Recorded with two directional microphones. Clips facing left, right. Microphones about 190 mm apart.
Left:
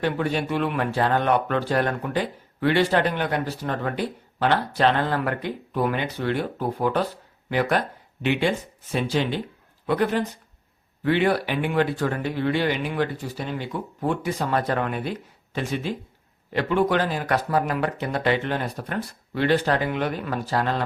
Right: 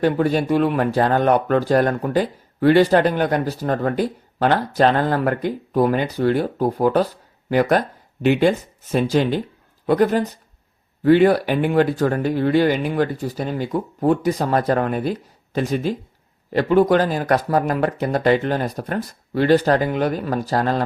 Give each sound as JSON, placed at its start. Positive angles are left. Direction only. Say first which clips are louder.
{"t": 0.0, "sound": "speech", "louder": "right 6 dB", "side_deg": -40}